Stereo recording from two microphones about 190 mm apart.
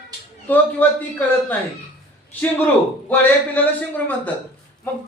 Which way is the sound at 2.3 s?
10° left (ahead or behind).